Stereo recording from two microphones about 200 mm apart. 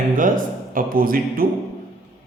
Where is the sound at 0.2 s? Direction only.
40° right (ahead or behind).